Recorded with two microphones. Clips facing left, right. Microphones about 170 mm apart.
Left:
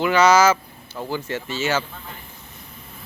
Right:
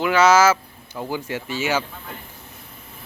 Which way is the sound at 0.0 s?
5° right (ahead or behind).